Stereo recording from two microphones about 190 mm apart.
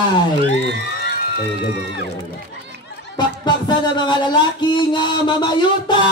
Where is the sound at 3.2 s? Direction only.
25° left (ahead or behind).